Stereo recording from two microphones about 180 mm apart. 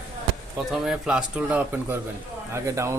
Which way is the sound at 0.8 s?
5° right (ahead or behind).